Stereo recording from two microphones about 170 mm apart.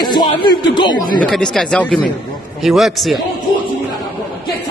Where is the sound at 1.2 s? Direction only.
5° left (ahead or behind).